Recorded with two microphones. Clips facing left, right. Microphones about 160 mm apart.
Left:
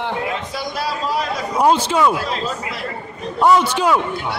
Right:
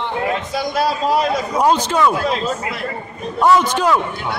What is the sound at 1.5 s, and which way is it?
Speech, 10° left (ahead or behind).